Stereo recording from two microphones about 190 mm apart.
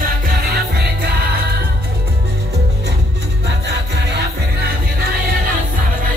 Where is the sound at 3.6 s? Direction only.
60° right (ahead or behind).